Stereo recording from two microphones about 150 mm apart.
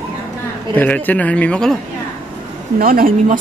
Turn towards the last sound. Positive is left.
turn(degrees=-70)  # may be behind; listen again after turning